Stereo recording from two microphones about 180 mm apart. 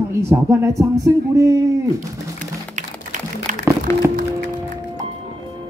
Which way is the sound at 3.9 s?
15° left (ahead or behind).